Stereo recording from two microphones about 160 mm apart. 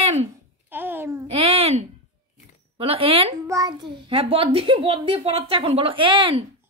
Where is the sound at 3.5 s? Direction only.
25° right (ahead or behind).